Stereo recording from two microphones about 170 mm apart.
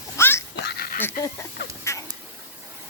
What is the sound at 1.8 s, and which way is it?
Fowl, 15° left (ahead or behind).